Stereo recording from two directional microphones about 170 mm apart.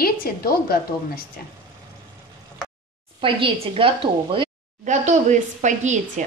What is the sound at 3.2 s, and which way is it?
A woman's voice, 35° right (ahead or behind).